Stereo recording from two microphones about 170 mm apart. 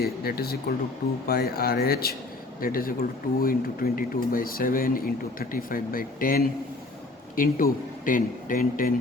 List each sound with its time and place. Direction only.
0.0 s speech: 65° left (ahead or behind)